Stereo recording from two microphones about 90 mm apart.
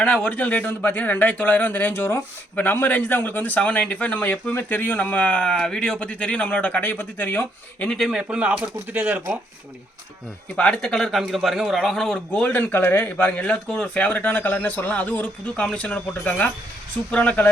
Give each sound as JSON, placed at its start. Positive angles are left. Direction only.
{"t": 0.0, "sound": "speech", "side_deg": 15}
{"t": 7.9, "sound": "a man's voice", "side_deg": 0}
{"t": 8.2, "sound": "speech", "side_deg": -15}
{"t": 10.6, "sound": "a man's voice", "side_deg": 10}
{"t": 12.3, "sound": "speech", "side_deg": 20}